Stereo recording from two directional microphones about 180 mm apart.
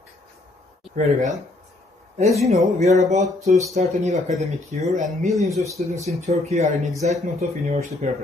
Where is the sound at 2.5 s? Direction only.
40° right (ahead or behind).